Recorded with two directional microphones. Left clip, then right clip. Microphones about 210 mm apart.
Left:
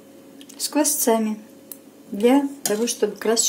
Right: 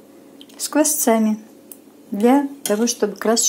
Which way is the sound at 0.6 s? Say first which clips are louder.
Right 3 dB; 15° right (ahead or behind).